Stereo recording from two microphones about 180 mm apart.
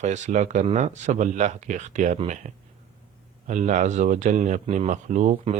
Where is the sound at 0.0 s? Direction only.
40° right (ahead or behind).